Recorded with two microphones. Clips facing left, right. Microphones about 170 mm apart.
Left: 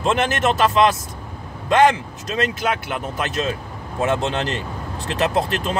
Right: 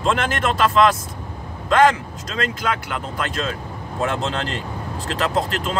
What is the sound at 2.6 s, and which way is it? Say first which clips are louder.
Speech: left 2 dB; 25° left (ahead or behind).